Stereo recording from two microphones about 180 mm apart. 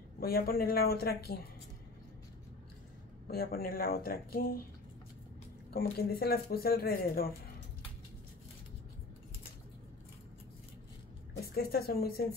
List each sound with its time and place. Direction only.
0.2 s speech: 55° left (ahead or behind)
3.3 s speech: 55° left (ahead or behind)
5.7 s speech: 55° left (ahead or behind)
11.5 s speech: 60° left (ahead or behind)